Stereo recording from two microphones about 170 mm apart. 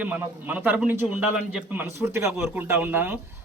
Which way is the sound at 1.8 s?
15° right (ahead or behind).